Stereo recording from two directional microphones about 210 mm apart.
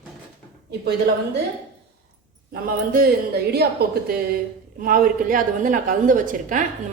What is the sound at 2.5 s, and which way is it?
A woman's voice, 45° right (ahead or behind).